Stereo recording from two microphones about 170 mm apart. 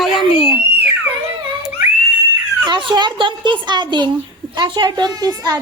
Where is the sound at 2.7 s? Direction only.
30° right (ahead or behind).